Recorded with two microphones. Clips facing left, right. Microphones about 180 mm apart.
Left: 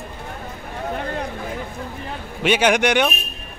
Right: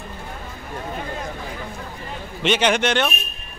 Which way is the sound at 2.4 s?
10° left (ahead or behind).